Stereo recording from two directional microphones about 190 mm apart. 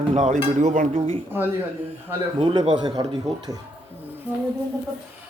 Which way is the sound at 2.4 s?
25° right (ahead or behind).